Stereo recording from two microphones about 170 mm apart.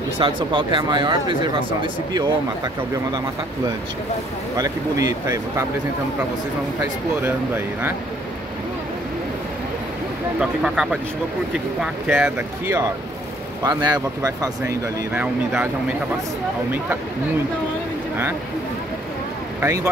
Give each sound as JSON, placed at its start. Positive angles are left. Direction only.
{"t": 0.2, "sound": "speech", "side_deg": -30}
{"t": 4.6, "sound": "speech", "side_deg": -20}
{"t": 6.8, "sound": "speech", "side_deg": -10}
{"t": 10.4, "sound": "speech", "side_deg": -5}
{"t": 13.8, "sound": "speech", "side_deg": -25}
{"t": 15.1, "sound": "speech", "side_deg": -10}
{"t": 19.6, "sound": "speech", "side_deg": -15}